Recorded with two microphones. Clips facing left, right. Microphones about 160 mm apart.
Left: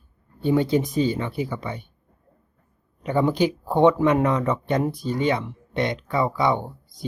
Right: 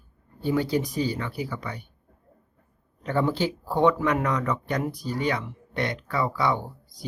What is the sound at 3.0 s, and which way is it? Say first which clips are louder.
Speech: left 4 dB; 15° left (ahead or behind).